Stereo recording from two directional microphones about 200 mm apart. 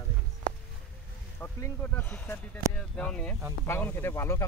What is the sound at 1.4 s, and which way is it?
Speech, 10° left (ahead or behind).